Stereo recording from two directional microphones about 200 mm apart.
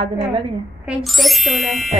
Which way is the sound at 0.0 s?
30° right (ahead or behind).